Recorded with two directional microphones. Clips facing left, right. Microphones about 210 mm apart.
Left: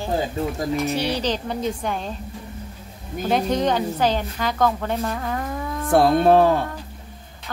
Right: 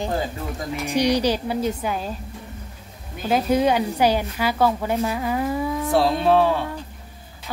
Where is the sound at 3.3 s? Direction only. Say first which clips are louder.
Right 2 dB; 10° right (ahead or behind).